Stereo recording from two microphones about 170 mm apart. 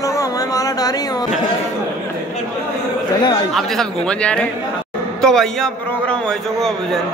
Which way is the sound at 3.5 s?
Centre (ahead or behind).